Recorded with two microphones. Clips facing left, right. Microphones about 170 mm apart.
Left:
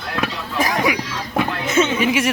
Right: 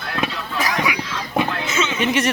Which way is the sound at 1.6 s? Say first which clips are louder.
Left 5 dB; 55° left (ahead or behind).